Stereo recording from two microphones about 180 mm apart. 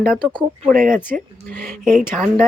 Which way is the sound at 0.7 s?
50° right (ahead or behind).